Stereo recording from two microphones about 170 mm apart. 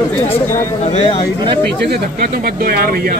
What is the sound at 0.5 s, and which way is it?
Speech, 40° left (ahead or behind).